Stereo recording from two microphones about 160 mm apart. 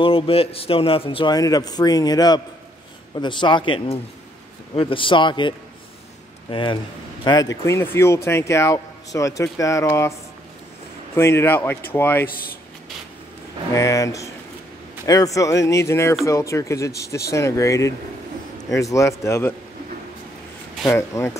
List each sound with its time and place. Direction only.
0.0 s a man's voice: 35° left (ahead or behind)
6.5 s a man's voice: 30° left (ahead or behind)
11.1 s speech: 15° left (ahead or behind)
13.7 s a man's voice: 20° left (ahead or behind)
20.8 s speech: 15° left (ahead or behind)